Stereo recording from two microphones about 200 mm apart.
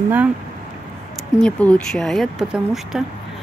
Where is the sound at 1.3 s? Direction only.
5° left (ahead or behind).